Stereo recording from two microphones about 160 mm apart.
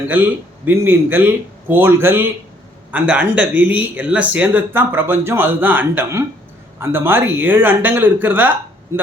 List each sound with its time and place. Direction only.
0.0 s speech: 10° right (ahead or behind)